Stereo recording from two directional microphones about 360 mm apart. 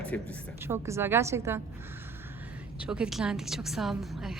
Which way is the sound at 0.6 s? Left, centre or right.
Centre.